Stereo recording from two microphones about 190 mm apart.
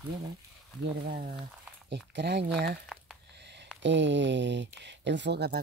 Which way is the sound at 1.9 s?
65° right (ahead or behind).